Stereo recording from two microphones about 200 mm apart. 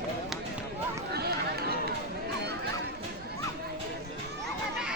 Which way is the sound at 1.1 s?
50° right (ahead or behind).